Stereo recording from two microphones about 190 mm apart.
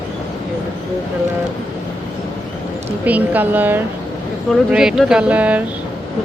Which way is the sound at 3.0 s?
10° right (ahead or behind).